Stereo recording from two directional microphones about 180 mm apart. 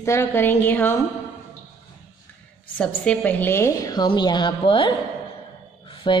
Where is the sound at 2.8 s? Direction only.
10° left (ahead or behind).